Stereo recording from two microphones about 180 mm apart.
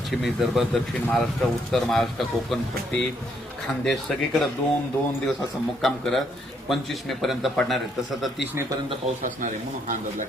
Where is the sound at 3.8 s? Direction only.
Centre (ahead or behind).